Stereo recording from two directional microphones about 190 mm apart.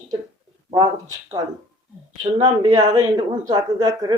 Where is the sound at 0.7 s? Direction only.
20° right (ahead or behind).